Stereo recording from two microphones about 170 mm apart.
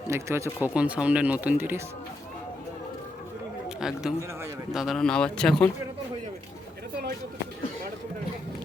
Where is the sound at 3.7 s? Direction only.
5° right (ahead or behind).